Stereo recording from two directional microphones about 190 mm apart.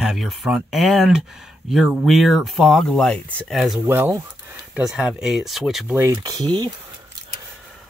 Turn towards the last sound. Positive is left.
turn(degrees=-20)  # may be behind; listen again after turning